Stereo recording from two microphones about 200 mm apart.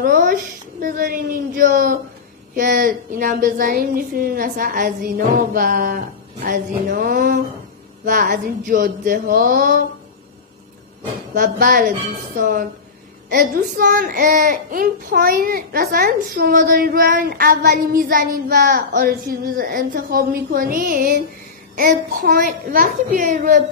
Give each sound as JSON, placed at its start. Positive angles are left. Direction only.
{"t": 0.0, "sound": "a woman's voice", "side_deg": -45}
{"t": 11.5, "sound": "a woman's voice", "side_deg": -45}
{"t": 22.2, "sound": "a woman's voice", "side_deg": -45}